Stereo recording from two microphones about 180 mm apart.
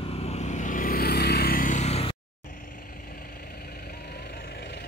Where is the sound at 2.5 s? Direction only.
50° left (ahead or behind).